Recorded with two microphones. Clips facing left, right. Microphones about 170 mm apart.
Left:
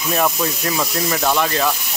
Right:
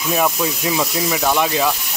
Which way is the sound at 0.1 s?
5° right (ahead or behind).